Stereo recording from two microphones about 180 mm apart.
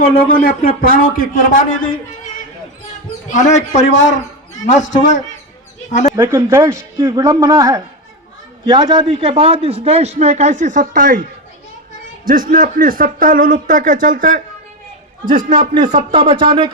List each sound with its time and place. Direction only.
0.1 s a man's voice: 55° left (ahead or behind)
3.3 s a man's voice: 40° left (ahead or behind)
6.1 s a man's voice: 15° right (ahead or behind); by 11.2 s 50° right (ahead or behind)
12.2 s a man's voice: 50° right (ahead or behind); by 16.6 s 30° right (ahead or behind)